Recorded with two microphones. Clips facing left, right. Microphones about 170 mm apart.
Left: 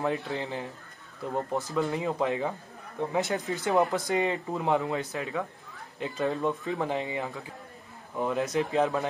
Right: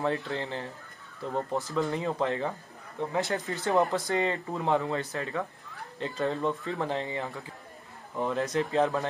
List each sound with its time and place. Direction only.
0.1 s speech: 15° left (ahead or behind)